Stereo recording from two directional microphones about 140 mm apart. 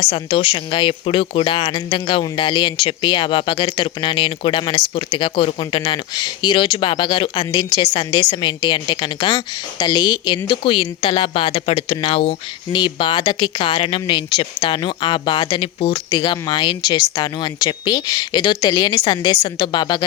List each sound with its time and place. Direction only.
0.0 s a woman's voice: 45° left (ahead or behind)